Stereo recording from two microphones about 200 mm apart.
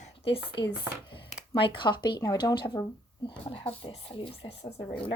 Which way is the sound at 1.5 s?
25° left (ahead or behind).